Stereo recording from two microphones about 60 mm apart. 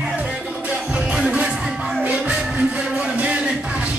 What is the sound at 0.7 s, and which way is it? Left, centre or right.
Music, centre.